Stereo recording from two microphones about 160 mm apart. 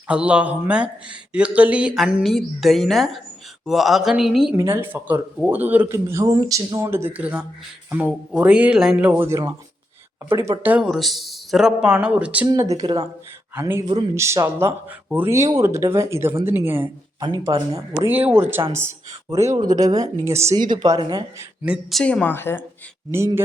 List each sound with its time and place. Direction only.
0.1 s speech: 5° right (ahead or behind)
4.5 s speech: 15° right (ahead or behind)
10.6 s speech: 10° right (ahead or behind)
12.5 s speech: 20° right (ahead or behind)
12.8 s speech: 35° right (ahead or behind)
13.6 s speech: 15° right (ahead or behind)
17.2 s speech: 25° right (ahead or behind)
18.1 s speech: 10° right (ahead or behind); by 21.2 s 25° right (ahead or behind)
21.6 s a woman's voice: 5° right (ahead or behind); by 22.6 s 15° left (ahead or behind)
23.1 s speech: 15° right (ahead or behind)